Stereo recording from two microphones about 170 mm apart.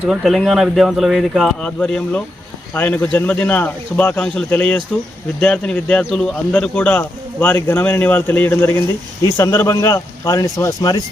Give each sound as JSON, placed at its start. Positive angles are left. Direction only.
{"t": 0.0, "sound": "a man's voice", "side_deg": 0}